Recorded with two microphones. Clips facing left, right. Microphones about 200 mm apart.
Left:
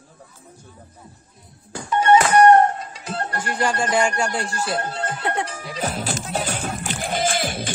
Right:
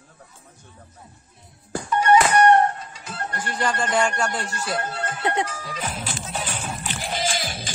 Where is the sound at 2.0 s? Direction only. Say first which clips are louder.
Left 2 dB; 25° left (ahead or behind).